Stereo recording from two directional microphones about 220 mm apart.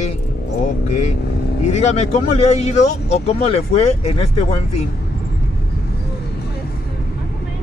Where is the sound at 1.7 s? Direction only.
30° left (ahead or behind).